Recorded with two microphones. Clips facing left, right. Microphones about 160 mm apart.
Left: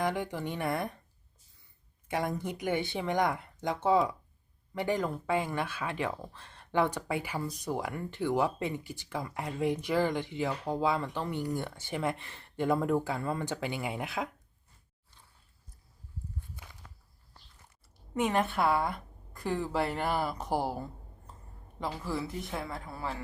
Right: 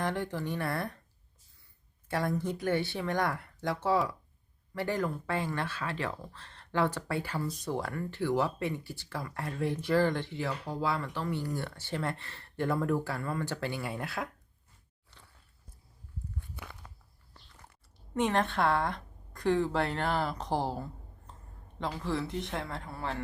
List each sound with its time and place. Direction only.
0.0 s speech: 15° left (ahead or behind)
2.0 s speech: 15° left (ahead or behind)
18.1 s speech: 10° left (ahead or behind)